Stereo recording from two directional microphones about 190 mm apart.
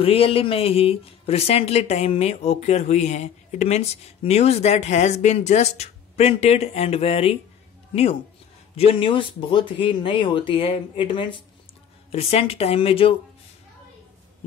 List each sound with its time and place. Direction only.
0.0 s speech: 30° left (ahead or behind)